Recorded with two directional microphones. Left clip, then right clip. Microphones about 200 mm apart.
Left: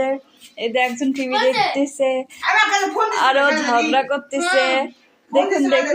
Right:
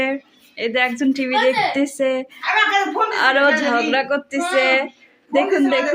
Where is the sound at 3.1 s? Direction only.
20° right (ahead or behind).